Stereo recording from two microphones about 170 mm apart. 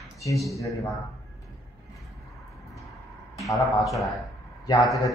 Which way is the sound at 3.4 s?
Centre (ahead or behind).